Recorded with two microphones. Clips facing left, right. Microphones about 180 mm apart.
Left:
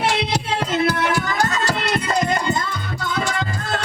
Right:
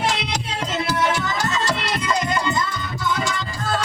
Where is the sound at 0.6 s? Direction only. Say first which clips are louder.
Left 1 dB; 55° left (ahead or behind).